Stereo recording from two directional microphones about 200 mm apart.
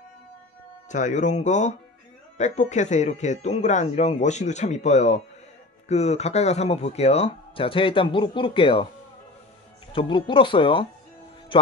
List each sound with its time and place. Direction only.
0.8 s speech: 40° left (ahead or behind)
9.9 s speech: 25° left (ahead or behind)